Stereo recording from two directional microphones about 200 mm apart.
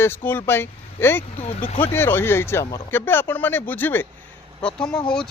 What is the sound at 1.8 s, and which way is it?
Speech, 10° left (ahead or behind).